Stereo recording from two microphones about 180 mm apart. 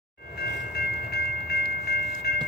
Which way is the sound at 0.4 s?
60° left (ahead or behind).